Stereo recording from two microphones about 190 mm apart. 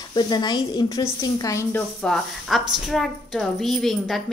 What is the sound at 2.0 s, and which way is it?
A woman's voice, centre (ahead or behind).